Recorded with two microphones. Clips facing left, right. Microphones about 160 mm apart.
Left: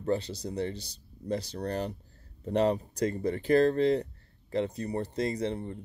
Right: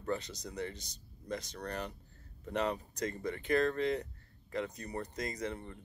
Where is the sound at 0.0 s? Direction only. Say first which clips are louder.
Left 7 dB; 30° left (ahead or behind).